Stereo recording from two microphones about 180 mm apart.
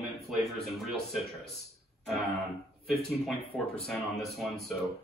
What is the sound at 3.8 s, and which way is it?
Speech, centre (ahead or behind).